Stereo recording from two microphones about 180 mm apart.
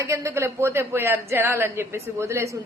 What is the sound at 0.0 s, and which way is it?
Speech, 15° right (ahead or behind).